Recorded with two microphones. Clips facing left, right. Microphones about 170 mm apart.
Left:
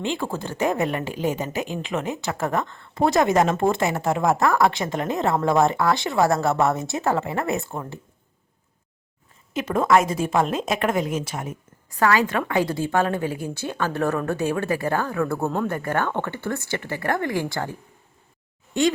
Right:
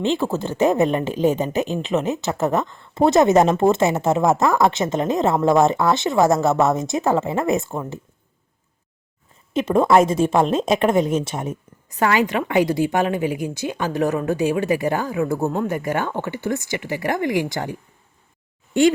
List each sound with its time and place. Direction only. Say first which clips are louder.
0.0 s speech: right 6 dB; 20° right (ahead or behind)
9.5 s speech: right 3 dB; 25° right (ahead or behind)